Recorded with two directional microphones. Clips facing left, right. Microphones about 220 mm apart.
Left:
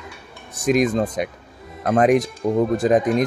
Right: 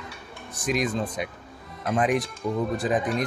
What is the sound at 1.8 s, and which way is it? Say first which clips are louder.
Speech: left 7 dB; 60° left (ahead or behind).